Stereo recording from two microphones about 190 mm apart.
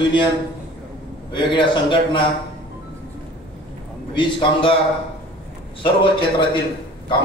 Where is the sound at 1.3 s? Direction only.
25° left (ahead or behind).